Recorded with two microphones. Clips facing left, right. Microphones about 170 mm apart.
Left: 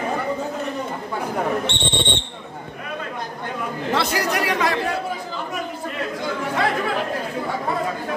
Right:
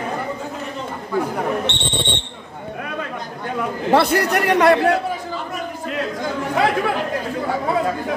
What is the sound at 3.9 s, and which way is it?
Speech, 55° right (ahead or behind).